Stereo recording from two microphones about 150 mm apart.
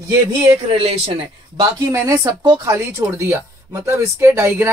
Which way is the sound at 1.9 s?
20° right (ahead or behind).